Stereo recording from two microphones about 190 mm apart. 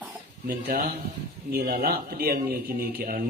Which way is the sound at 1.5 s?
50° right (ahead or behind).